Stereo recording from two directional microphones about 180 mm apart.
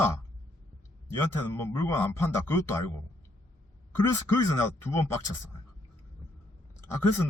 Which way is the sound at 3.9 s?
15° left (ahead or behind).